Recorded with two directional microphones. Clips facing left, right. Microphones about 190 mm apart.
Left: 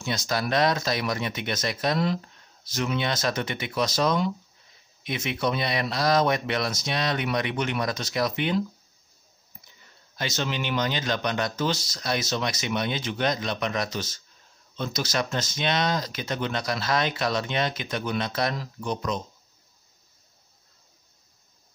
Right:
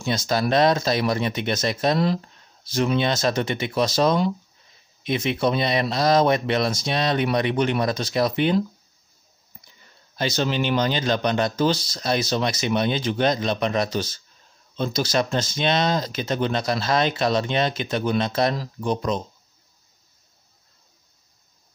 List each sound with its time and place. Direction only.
0.0 s speech: 30° right (ahead or behind)
10.1 s speech: 35° right (ahead or behind)